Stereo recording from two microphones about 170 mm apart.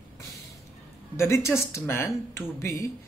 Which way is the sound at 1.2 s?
15° left (ahead or behind).